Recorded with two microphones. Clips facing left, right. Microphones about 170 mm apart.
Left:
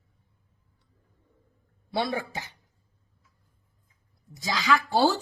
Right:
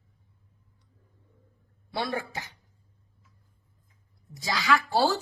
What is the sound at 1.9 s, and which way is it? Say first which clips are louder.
Speech: left 3 dB; 20° left (ahead or behind).